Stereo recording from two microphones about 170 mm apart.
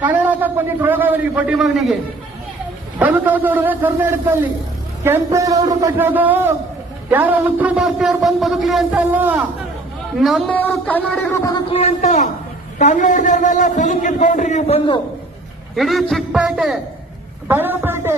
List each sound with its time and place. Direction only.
0.0 s a man's voice: 10° right (ahead or behind)
3.0 s a man's voice: 10° right (ahead or behind)
9.1 s a man's voice: 10° right (ahead or behind)
10.2 s a man's voice: centre (ahead or behind)
11.7 s a man's voice: 40° left (ahead or behind)
15.7 s a man's voice: centre (ahead or behind)